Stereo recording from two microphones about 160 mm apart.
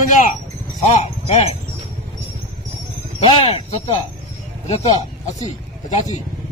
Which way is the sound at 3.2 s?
35° left (ahead or behind).